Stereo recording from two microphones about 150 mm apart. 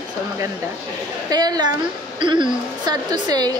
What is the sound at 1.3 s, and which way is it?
A woman's voice, 25° right (ahead or behind).